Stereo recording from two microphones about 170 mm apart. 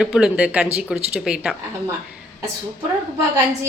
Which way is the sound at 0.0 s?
5° right (ahead or behind).